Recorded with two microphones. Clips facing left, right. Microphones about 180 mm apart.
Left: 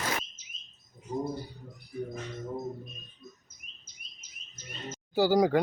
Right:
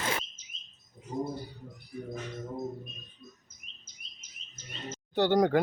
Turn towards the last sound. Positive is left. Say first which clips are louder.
# left 1 dB
turn(degrees=0)  # may be behind; listen again after turning